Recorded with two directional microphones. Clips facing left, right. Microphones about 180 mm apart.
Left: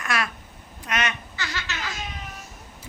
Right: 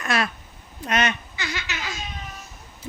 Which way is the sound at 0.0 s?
25° right (ahead or behind).